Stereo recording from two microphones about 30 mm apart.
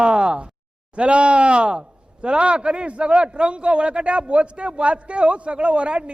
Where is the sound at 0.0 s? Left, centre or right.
Right.